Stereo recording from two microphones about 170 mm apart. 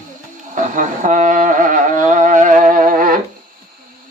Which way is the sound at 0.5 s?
50° right (ahead or behind).